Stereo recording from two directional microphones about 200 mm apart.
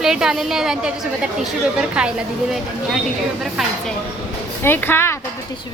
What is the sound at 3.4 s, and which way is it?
Speech, centre (ahead or behind).